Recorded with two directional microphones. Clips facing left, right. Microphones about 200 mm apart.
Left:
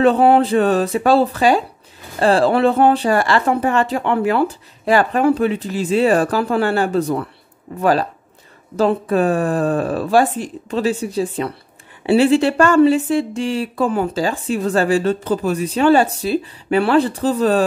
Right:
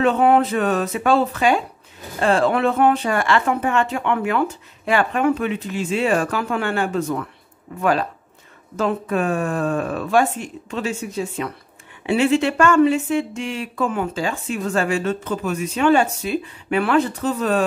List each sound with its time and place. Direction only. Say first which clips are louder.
0.0 s speech: left 3 dB; 35° left (ahead or behind)